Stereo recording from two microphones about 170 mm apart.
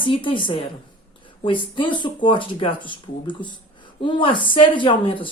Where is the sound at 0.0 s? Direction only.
30° left (ahead or behind).